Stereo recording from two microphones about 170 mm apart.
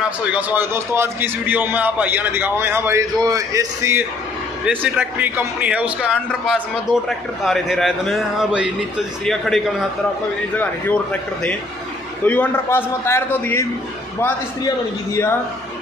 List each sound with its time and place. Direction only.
0.3 s a man's voice: 10° right (ahead or behind); by 11.0 s 10° left (ahead or behind)
12.3 s a man's voice: 10° left (ahead or behind)